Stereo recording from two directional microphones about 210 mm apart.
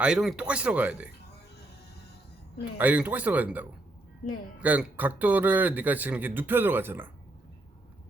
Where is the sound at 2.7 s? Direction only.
5° right (ahead or behind).